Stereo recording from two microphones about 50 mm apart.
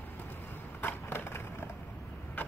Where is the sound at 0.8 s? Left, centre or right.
Left.